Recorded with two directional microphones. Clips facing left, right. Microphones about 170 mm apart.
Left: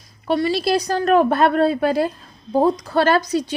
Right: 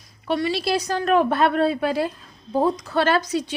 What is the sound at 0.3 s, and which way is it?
A woman's voice, 40° left (ahead or behind).